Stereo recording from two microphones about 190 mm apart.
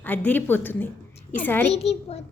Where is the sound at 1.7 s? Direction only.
35° left (ahead or behind).